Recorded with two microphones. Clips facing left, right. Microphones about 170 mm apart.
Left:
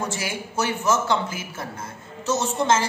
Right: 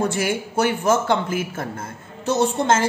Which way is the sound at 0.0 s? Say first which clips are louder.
Right 7 dB; 55° right (ahead or behind).